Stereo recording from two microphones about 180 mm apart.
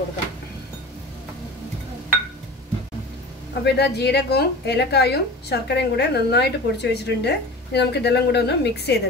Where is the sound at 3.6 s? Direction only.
65° left (ahead or behind).